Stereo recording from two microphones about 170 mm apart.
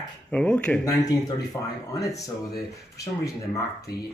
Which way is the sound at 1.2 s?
20° left (ahead or behind).